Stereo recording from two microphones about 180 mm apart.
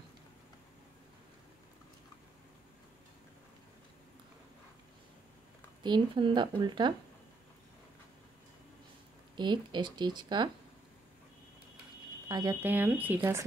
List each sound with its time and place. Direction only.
5.8 s a woman's voice: 25° right (ahead or behind)
9.4 s a woman's voice: 25° right (ahead or behind)
12.3 s speech: 20° right (ahead or behind)